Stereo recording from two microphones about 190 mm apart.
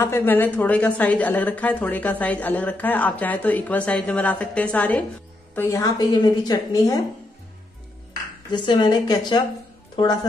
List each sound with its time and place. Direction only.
0.0 s a woman's voice: 10° left (ahead or behind)
8.1 s a woman's voice: 25° left (ahead or behind)